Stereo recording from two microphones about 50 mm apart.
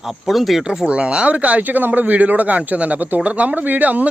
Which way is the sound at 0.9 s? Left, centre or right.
Right.